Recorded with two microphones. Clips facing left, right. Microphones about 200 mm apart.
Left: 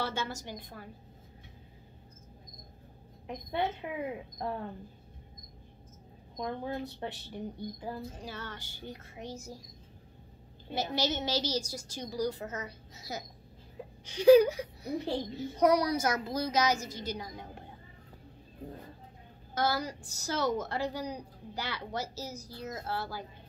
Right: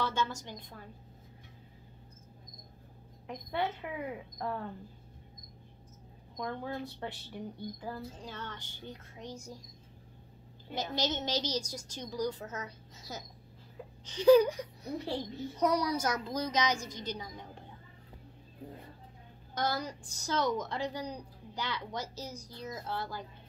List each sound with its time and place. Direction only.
0.0 s a woman's voice: 10° left (ahead or behind)
3.3 s speech: 20° left (ahead or behind)
6.3 s speech: 20° left (ahead or behind)
8.2 s a woman's voice: 10° left (ahead or behind)
10.7 s a woman's voice: 10° left (ahead or behind)
19.5 s a woman's voice: 5° left (ahead or behind)